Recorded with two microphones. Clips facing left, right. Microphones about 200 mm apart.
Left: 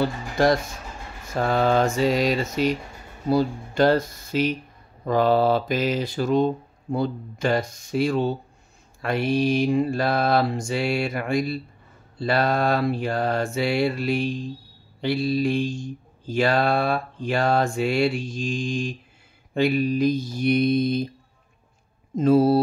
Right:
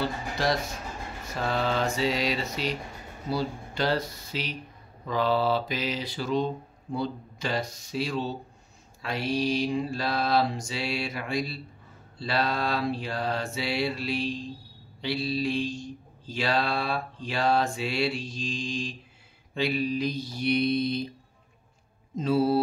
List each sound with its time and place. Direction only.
0.4 s mantra: 50° left (ahead or behind)
22.1 s mantra: 50° left (ahead or behind)